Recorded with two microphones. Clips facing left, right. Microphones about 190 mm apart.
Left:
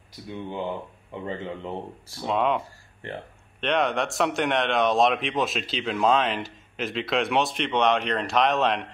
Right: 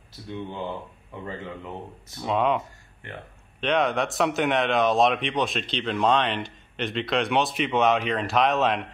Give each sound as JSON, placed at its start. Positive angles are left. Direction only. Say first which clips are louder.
{"t": 1.2, "sound": "speech", "louder": "left 3 dB", "side_deg": 25}
{"t": 2.2, "sound": "speech", "louder": "right 1 dB", "side_deg": 0}
{"t": 3.0, "sound": "speech", "louder": "left 5 dB", "side_deg": 30}
{"t": 3.6, "sound": "speech", "louder": "right 1 dB", "side_deg": 0}